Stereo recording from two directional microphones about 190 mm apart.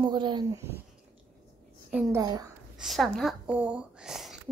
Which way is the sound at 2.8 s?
Centre (ahead or behind).